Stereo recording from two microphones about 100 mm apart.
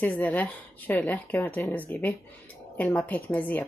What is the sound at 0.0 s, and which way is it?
Speech, 15° left (ahead or behind).